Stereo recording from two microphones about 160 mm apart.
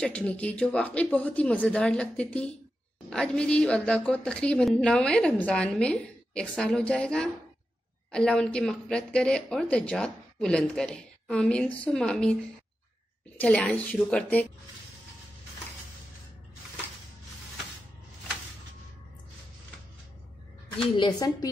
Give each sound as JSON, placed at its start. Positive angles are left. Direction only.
{"t": 0.0, "sound": "speech", "side_deg": 5}
{"t": 13.4, "sound": "speech", "side_deg": 10}
{"t": 21.0, "sound": "speech", "side_deg": 25}